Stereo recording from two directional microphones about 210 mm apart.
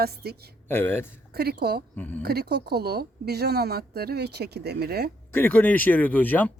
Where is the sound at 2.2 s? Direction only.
50° right (ahead or behind).